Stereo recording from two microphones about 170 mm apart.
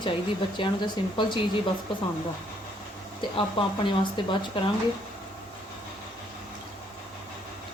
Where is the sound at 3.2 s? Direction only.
30° left (ahead or behind).